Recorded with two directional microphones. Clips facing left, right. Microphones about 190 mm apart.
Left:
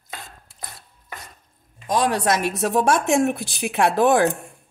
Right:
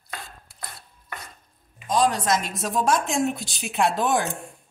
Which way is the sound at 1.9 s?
65° left (ahead or behind).